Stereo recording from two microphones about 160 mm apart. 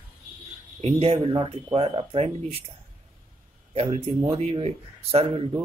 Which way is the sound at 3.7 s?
40° right (ahead or behind).